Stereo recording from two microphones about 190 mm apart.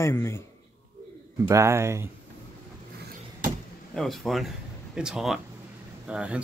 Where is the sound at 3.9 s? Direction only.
Centre (ahead or behind).